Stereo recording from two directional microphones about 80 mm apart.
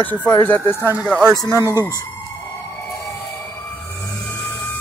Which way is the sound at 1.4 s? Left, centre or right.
Right.